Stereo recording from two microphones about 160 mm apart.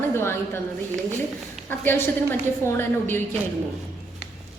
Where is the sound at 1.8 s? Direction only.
15° left (ahead or behind).